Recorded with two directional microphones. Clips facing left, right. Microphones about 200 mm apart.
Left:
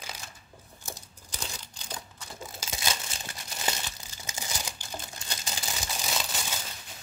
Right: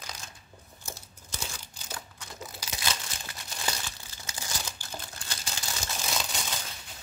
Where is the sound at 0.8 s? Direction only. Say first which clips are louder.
Left 1 dB; 15° left (ahead or behind).